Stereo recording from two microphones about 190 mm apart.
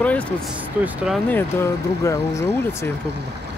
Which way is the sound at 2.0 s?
15° left (ahead or behind).